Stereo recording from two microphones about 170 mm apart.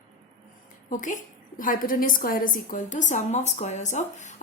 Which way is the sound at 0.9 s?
50° left (ahead or behind).